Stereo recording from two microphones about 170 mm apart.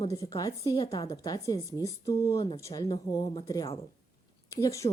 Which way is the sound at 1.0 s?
20° left (ahead or behind).